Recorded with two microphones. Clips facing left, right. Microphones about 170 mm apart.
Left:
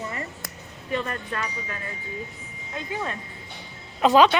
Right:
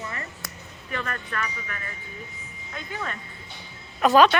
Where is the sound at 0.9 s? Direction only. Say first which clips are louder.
Left 4 dB; 25° left (ahead or behind).